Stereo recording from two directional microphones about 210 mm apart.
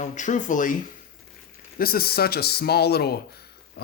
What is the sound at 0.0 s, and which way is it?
Speech, 35° left (ahead or behind).